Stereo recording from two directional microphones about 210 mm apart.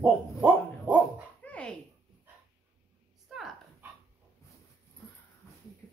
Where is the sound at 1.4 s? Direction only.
5° left (ahead or behind).